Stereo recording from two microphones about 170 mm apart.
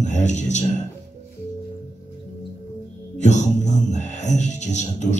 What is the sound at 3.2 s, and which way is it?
Music, 45° left (ahead or behind).